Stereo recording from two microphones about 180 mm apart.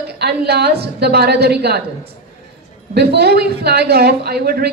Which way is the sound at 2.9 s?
65° right (ahead or behind).